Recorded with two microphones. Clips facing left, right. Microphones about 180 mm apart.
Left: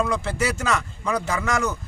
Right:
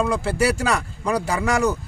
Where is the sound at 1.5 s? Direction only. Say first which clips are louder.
Right 5 dB; 35° right (ahead or behind).